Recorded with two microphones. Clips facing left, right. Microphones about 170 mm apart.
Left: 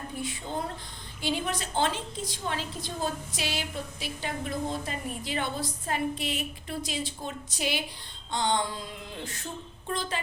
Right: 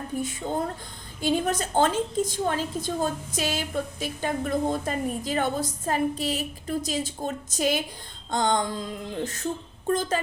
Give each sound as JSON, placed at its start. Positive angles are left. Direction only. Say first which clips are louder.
{"t": 0.2, "sound": "a woman's voice", "louder": "right 5 dB", "side_deg": -45}